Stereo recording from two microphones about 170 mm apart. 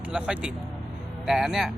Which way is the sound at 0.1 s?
5° right (ahead or behind).